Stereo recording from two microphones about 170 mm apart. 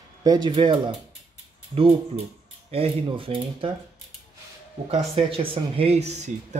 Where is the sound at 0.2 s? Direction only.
25° right (ahead or behind).